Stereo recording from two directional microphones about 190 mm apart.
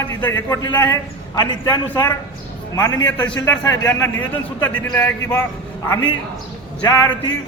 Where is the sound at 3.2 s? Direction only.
5° left (ahead or behind).